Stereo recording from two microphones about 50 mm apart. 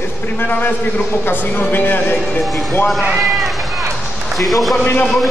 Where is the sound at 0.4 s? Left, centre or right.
Left.